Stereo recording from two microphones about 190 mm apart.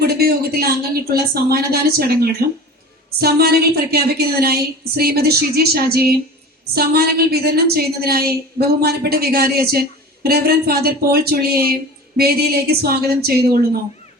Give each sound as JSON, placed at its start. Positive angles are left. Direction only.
{"t": 0.0, "sound": "a woman's voice", "side_deg": -55}